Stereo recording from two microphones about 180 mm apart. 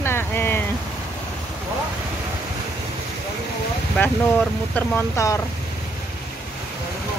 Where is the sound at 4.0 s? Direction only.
10° left (ahead or behind).